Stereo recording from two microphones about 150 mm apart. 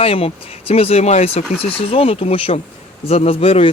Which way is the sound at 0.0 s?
40° left (ahead or behind).